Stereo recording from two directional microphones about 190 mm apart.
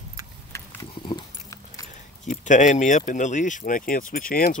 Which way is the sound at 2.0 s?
40° left (ahead or behind).